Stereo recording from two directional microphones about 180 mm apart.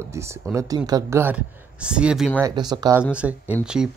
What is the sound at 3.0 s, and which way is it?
Speech, 5° right (ahead or behind).